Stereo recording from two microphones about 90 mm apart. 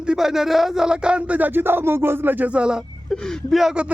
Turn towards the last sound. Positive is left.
turn(degrees=-10)  # may be behind; listen again after turning